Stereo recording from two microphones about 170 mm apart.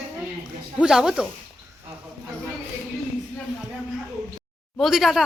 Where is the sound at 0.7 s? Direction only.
5° right (ahead or behind).